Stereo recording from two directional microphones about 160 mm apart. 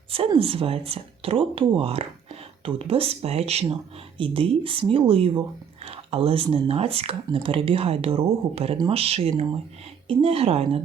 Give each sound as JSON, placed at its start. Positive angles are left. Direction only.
{"t": 0.1, "sound": "speech", "side_deg": -35}